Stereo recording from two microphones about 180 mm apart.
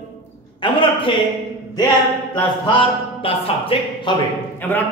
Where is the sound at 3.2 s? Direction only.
30° left (ahead or behind).